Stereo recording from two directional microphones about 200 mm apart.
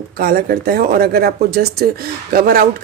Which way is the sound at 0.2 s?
50° right (ahead or behind).